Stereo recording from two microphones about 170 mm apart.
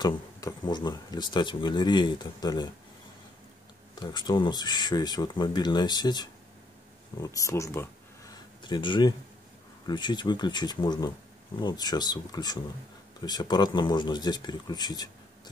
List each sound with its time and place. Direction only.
0.0 s speech: 20° left (ahead or behind)
3.9 s speech: 25° left (ahead or behind)
8.6 s speech: 30° left (ahead or behind)